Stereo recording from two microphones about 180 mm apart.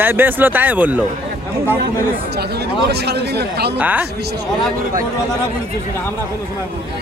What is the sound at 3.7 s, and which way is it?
Speech, 10° right (ahead or behind).